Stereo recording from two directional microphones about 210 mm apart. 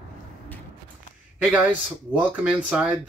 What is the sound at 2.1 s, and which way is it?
Speech, 5° right (ahead or behind).